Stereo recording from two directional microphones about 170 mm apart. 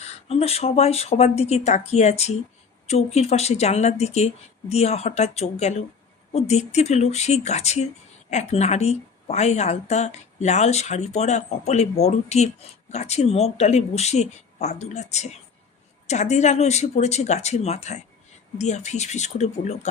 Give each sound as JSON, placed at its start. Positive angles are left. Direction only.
{"t": 0.0, "sound": "a woman's voice", "side_deg": 40}